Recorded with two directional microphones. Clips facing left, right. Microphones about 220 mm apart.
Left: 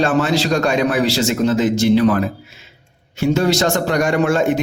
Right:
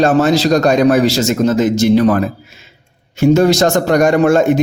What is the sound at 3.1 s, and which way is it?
A man's voice, 45° right (ahead or behind).